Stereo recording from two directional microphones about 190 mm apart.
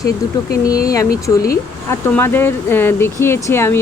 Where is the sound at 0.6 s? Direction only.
20° left (ahead or behind).